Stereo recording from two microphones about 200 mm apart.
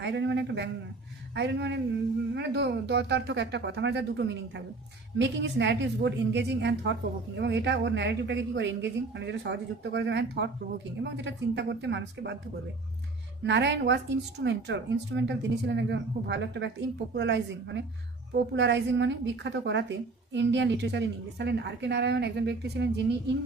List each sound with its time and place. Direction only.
0.0 s a man's voice: 60° right (ahead or behind)
13.4 s a woman's voice: 60° right (ahead or behind)